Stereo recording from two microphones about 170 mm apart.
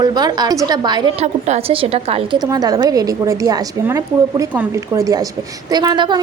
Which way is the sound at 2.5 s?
20° right (ahead or behind).